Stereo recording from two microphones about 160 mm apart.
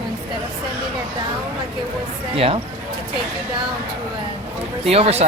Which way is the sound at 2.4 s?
35° right (ahead or behind).